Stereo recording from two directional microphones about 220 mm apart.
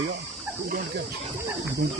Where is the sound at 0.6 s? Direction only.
45° right (ahead or behind).